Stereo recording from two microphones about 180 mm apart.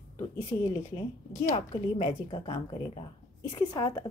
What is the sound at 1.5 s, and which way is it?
A woman's voice, 30° left (ahead or behind).